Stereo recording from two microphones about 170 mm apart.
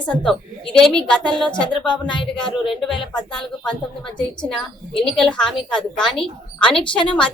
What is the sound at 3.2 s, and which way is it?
Speech, 5° left (ahead or behind).